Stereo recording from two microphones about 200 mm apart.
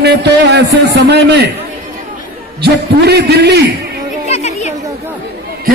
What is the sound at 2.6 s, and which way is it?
A man's voice, 55° right (ahead or behind).